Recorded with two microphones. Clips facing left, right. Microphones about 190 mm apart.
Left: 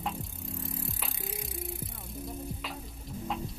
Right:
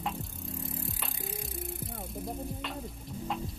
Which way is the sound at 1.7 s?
55° right (ahead or behind).